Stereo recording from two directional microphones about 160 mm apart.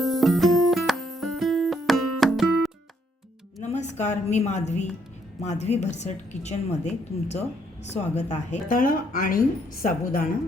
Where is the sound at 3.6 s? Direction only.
45° left (ahead or behind).